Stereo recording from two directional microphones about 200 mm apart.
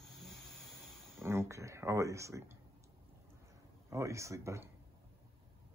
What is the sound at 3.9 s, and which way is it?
Speech, 15° right (ahead or behind).